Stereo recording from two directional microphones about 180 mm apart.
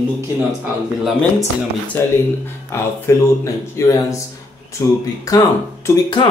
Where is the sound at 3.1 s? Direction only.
15° left (ahead or behind).